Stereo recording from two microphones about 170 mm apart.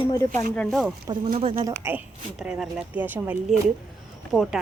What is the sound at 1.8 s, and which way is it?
Speech, 15° right (ahead or behind).